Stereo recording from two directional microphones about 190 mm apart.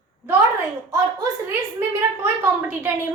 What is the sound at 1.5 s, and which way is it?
A woman's voice, 10° right (ahead or behind).